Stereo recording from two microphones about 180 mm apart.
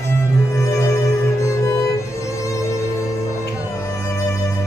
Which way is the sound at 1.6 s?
15° left (ahead or behind).